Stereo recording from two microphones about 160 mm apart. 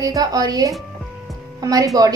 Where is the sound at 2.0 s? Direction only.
25° right (ahead or behind).